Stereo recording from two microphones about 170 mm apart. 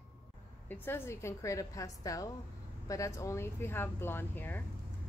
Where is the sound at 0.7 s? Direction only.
15° left (ahead or behind).